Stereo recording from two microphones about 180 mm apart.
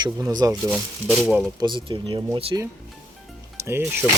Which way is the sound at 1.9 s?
25° right (ahead or behind).